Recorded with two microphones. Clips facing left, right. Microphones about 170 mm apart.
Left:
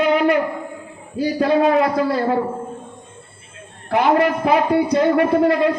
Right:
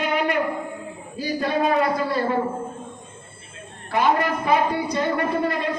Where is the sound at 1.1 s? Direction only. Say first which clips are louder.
Left 7 dB; 65° left (ahead or behind).